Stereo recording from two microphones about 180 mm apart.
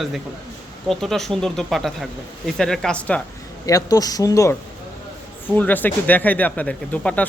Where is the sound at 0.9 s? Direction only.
Centre (ahead or behind).